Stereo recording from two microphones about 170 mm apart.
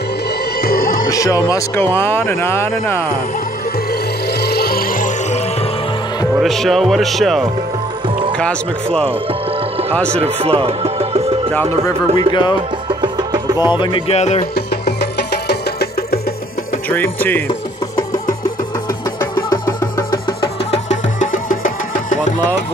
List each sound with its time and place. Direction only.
0.6 s music: 60° left (ahead or behind)
1.1 s speech: 20° left (ahead or behind)
3.9 s music: 70° left (ahead or behind); by 5.4 s 50° left (ahead or behind)
6.4 s speech: centre (ahead or behind)
9.3 s music: 35° right (ahead or behind)
9.9 s speech: 5° left (ahead or behind)
10.2 s speech: 35° right (ahead or behind)
12.3 s music: 25° left (ahead or behind)
13.0 s music: 25° right (ahead or behind)
13.7 s music: 25° left (ahead or behind)
14.5 s music: 70° left (ahead or behind)
16.9 s speech: 10° left (ahead or behind)
19.1 s music: 20° left (ahead or behind)
20.7 s music: 45° left (ahead or behind)